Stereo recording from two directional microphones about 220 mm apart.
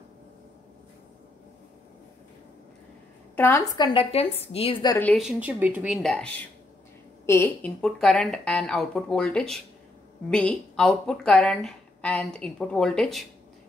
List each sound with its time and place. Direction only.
3.3 s a woman's voice: 10° left (ahead or behind)
4.9 s a woman's voice: 5° left (ahead or behind)